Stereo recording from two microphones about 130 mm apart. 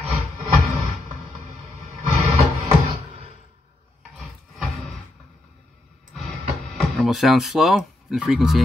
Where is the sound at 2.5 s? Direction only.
50° right (ahead or behind).